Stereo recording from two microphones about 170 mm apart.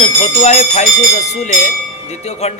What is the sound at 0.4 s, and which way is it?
Speech, 40° left (ahead or behind).